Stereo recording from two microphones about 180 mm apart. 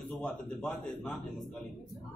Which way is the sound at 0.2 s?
5° left (ahead or behind).